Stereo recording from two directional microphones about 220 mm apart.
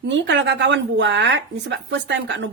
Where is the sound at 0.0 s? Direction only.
55° right (ahead or behind).